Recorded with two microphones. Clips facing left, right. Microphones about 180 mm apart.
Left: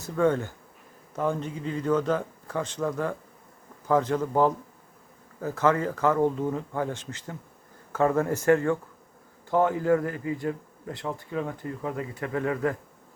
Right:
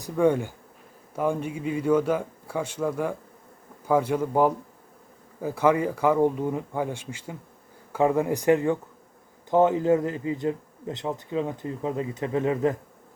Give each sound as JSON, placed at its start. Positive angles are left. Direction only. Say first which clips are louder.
{"t": 0.0, "sound": "a man's voice", "louder": "right 2 dB", "side_deg": -15}